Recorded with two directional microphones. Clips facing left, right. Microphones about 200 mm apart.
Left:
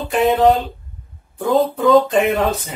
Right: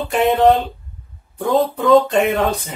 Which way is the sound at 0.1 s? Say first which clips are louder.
Even; centre (ahead or behind).